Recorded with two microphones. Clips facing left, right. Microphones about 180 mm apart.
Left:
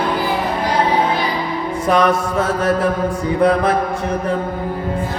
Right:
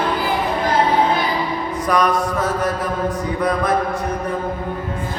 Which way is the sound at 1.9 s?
25° left (ahead or behind).